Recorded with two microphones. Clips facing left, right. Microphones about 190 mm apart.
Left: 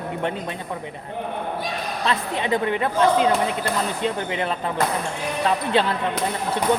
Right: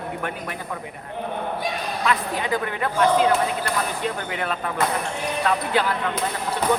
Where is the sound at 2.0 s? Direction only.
25° left (ahead or behind).